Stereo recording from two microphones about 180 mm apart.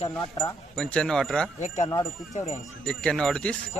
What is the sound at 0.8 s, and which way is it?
Speech, 5° left (ahead or behind).